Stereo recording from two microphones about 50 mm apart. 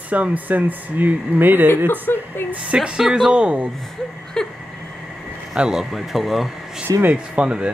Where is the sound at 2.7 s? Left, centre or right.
Centre.